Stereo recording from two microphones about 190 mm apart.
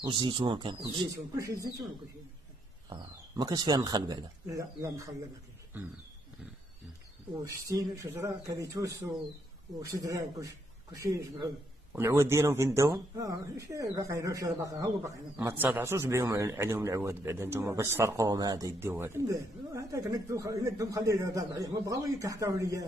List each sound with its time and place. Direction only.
0.0 s speech: 25° right (ahead or behind)
2.9 s speech: 20° right (ahead or behind)
7.7 s a man's voice: 15° right (ahead or behind)